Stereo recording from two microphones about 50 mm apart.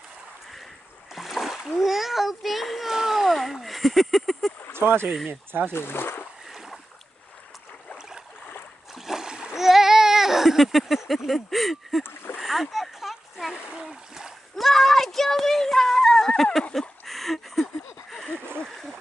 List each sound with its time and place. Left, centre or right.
1.1 s splash: centre
1.8 s a sound: centre
4.7 s speech: right
5.3 s speech: right
5.7 s speech: left
9.0 s splash: centre
9.5 s a sound: centre
11.2 s speech: centre
12.4 s splash: centre
14.6 s speech: centre
17.0 s a sound: centre